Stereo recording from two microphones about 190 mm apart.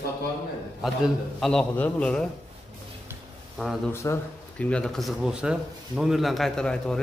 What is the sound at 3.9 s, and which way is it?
A man's voice, 15° left (ahead or behind).